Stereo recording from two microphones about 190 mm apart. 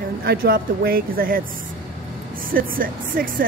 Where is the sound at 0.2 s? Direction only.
50° right (ahead or behind).